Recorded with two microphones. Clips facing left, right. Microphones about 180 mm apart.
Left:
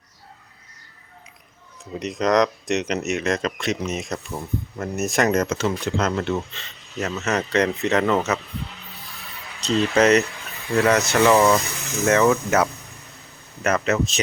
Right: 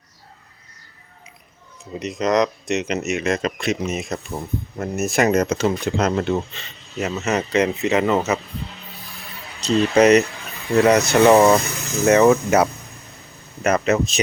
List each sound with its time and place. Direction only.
1.8 s speech: centre (ahead or behind)
9.6 s speech: 10° right (ahead or behind)
13.7 s speech: 15° right (ahead or behind)